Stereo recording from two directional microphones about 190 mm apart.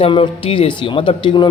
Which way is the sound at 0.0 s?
30° left (ahead or behind).